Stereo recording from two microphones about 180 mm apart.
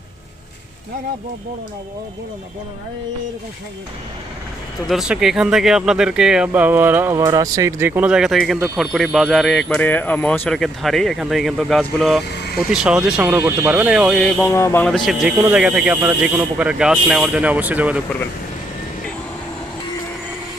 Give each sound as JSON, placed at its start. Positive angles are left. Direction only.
{"t": 4.9, "sound": "speech", "side_deg": -5}
{"t": 12.3, "sound": "vehicle", "side_deg": 70}
{"t": 12.5, "sound": "speech", "side_deg": -5}
{"t": 14.2, "sound": "speech", "side_deg": 10}